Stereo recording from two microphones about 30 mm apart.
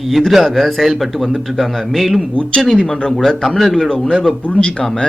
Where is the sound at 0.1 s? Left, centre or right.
Centre.